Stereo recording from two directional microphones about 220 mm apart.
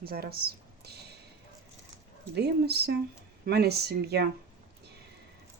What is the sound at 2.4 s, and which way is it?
Speech, 45° right (ahead or behind).